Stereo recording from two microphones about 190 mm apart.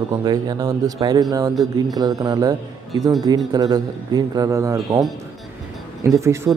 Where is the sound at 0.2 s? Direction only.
20° right (ahead or behind).